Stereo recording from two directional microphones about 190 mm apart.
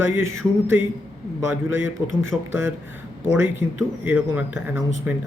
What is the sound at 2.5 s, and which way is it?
Speech, 10° right (ahead or behind).